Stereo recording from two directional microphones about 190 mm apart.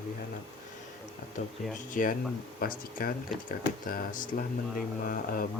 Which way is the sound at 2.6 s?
50° left (ahead or behind).